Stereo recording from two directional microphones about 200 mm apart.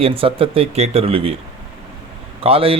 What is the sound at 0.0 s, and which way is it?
A man's voice, 30° right (ahead or behind).